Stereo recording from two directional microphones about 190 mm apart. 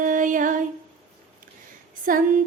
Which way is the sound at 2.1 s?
45° right (ahead or behind).